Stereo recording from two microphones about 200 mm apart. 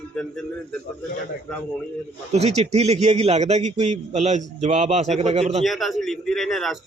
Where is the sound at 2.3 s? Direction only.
35° right (ahead or behind).